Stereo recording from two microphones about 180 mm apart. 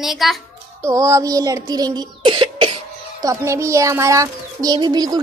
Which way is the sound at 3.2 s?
15° right (ahead or behind).